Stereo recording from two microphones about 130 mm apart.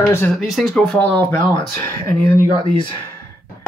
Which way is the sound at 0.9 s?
15° left (ahead or behind).